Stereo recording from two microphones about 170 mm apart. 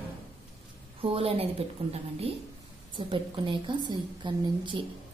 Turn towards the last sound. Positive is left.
turn(degrees=-30)  # may be behind; listen again after turning